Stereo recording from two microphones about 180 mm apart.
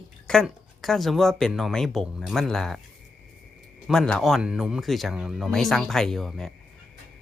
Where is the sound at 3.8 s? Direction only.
5° left (ahead or behind).